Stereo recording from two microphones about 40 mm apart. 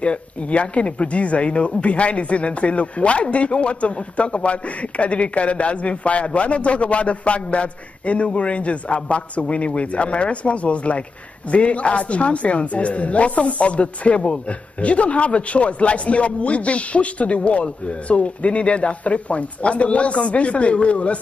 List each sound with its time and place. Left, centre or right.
0.0 s speech: left